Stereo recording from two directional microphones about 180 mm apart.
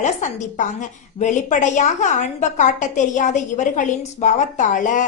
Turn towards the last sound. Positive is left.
turn(degrees=45)  # may be behind; listen again after turning